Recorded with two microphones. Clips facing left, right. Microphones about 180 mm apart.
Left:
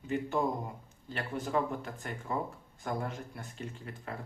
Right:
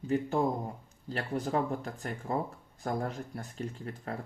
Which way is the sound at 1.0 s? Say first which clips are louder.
Right 3 dB; 35° right (ahead or behind).